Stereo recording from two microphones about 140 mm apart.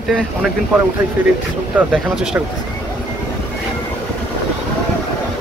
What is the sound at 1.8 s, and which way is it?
Speech, 10° right (ahead or behind).